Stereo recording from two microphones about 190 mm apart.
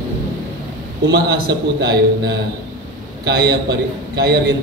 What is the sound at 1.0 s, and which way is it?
A man's voice, 60° right (ahead or behind).